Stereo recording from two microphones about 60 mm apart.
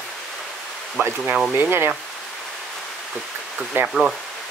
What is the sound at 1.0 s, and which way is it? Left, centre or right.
Speech, right.